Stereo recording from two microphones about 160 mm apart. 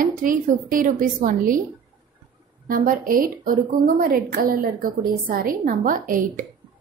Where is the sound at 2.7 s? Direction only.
60° right (ahead or behind).